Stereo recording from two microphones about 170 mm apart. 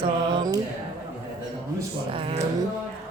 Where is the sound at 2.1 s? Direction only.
35° right (ahead or behind).